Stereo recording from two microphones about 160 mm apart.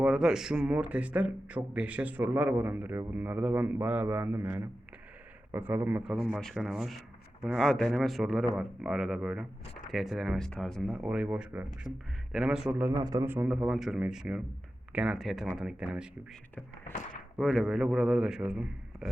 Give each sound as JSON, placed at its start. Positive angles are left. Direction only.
{"t": 0.0, "sound": "speech", "side_deg": -5}
{"t": 6.4, "sound": "a man's voice", "side_deg": 0}
{"t": 10.9, "sound": "a man's voice", "side_deg": -10}
{"t": 12.9, "sound": "a man's voice", "side_deg": -20}
{"t": 17.3, "sound": "a man's voice", "side_deg": 0}